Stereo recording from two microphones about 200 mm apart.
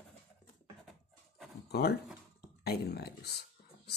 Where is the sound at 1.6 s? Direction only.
50° left (ahead or behind).